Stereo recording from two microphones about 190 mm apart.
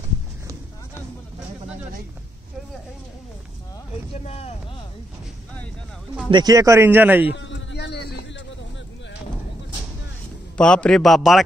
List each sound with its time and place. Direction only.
4.3 s speech: 30° left (ahead or behind)
6.3 s speech: 20° right (ahead or behind)
7.3 s a sound: 75° left (ahead or behind)
10.6 s speech: 5° left (ahead or behind)